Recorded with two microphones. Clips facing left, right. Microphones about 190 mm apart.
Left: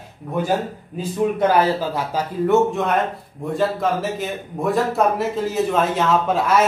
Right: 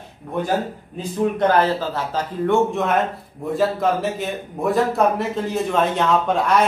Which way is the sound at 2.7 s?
Centre (ahead or behind).